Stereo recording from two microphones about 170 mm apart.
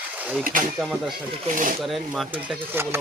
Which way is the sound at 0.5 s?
55° right (ahead or behind).